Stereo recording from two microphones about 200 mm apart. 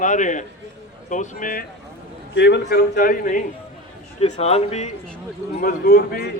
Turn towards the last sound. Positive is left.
turn(degrees=50)  # may be behind; listen again after turning